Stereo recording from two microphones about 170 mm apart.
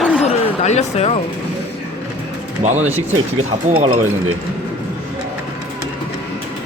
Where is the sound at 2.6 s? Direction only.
45° right (ahead or behind).